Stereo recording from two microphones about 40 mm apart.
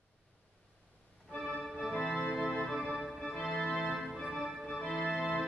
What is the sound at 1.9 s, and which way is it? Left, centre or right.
Music, centre.